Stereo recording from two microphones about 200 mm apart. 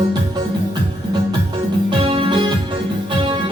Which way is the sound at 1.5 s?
25° right (ahead or behind).